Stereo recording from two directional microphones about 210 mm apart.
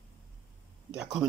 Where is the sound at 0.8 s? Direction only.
5° right (ahead or behind).